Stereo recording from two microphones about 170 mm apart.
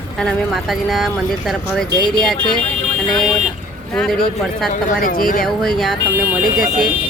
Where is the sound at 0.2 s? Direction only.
Centre (ahead or behind).